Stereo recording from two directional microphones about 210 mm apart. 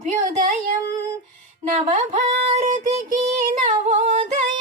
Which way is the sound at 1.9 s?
35° right (ahead or behind).